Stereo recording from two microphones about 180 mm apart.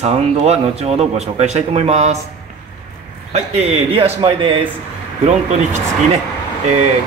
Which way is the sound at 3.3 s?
35° right (ahead or behind).